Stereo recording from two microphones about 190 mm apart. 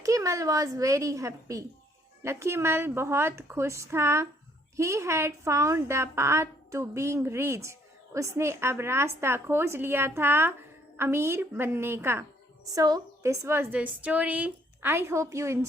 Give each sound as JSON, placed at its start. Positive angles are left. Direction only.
{"t": 0.0, "sound": "a woman's voice", "side_deg": -15}